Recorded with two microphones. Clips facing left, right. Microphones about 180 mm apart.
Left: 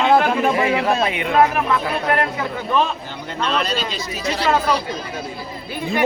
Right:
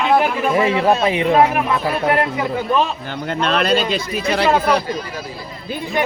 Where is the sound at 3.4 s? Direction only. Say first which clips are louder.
Right 5 dB; 60° right (ahead or behind).